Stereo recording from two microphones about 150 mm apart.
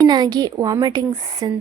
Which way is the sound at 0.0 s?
30° right (ahead or behind).